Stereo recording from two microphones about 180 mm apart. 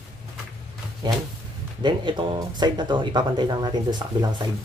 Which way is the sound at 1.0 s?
25° right (ahead or behind).